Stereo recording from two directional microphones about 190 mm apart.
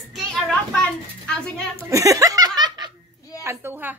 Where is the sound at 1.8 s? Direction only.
15° right (ahead or behind).